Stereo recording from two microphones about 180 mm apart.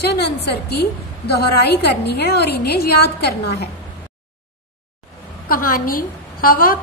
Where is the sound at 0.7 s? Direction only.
65° left (ahead or behind).